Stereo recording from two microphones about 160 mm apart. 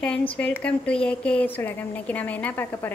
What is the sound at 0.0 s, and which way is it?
A woman's voice, 5° left (ahead or behind).